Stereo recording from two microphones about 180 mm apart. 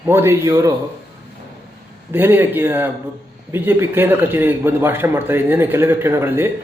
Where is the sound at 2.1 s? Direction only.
10° right (ahead or behind).